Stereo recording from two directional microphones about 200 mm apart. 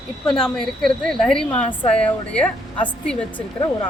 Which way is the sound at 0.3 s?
Centre (ahead or behind).